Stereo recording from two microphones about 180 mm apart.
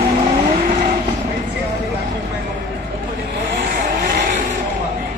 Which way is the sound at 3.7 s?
55° right (ahead or behind).